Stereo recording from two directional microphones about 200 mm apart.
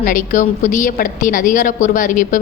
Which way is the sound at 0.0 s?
40° left (ahead or behind).